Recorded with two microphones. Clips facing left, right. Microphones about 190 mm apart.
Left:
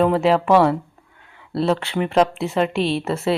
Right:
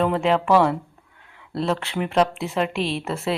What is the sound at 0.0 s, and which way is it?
Speech, centre (ahead or behind).